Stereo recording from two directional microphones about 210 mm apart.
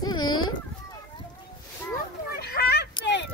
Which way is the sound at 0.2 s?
80° left.